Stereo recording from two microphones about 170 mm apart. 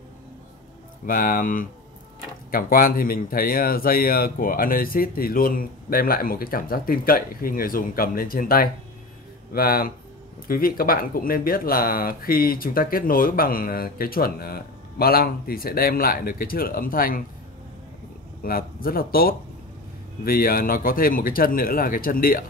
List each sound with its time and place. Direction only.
1.0 s speech: 55° left (ahead or behind)
18.4 s speech: 60° left (ahead or behind)